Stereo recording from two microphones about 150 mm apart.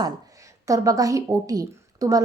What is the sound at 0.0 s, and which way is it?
A woman's voice, 20° right (ahead or behind).